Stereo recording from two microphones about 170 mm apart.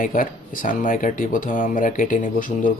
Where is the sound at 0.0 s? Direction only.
55° left (ahead or behind).